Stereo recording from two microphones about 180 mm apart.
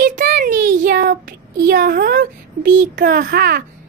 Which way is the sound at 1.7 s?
55° right (ahead or behind).